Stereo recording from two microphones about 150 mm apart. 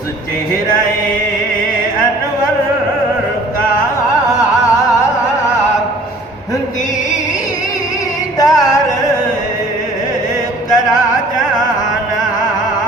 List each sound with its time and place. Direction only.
8.4 s music: 25° left (ahead or behind)